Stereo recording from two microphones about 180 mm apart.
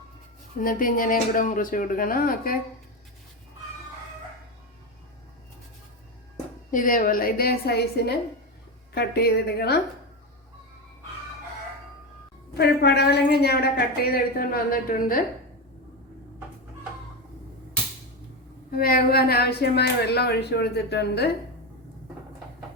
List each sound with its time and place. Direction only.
0.6 s speech: 50° left (ahead or behind)
6.7 s a woman's voice: 50° left (ahead or behind)
12.5 s a woman's voice: 65° left (ahead or behind)
18.7 s a woman's voice: 55° left (ahead or behind)